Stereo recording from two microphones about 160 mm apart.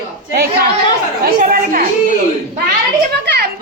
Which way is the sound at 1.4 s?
60° right (ahead or behind).